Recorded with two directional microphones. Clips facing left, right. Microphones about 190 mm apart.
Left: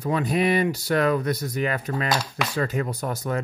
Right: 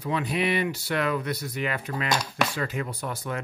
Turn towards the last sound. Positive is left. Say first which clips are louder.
# left 5 dB
turn(degrees=40)  # may be behind; listen again after turning